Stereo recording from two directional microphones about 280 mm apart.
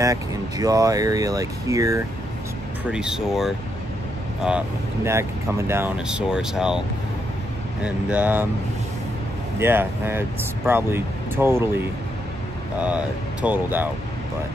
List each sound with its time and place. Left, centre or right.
0.0 s speech: centre
7.8 s speech: centre
9.6 s speech: centre
12.8 s speech: centre